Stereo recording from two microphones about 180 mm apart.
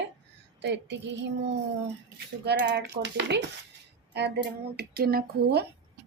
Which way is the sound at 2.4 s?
65° right (ahead or behind).